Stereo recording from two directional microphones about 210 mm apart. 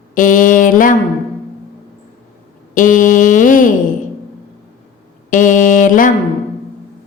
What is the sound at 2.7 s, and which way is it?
Mantra, 40° left (ahead or behind).